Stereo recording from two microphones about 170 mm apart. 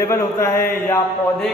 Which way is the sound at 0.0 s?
15° left (ahead or behind).